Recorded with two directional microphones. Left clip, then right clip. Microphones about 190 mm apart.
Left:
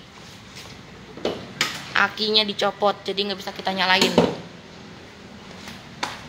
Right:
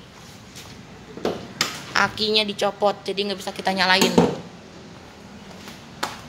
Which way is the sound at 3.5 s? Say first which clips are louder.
Right 1 dB; 25° right (ahead or behind).